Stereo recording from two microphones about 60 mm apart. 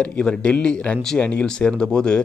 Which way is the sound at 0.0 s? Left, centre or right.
Centre.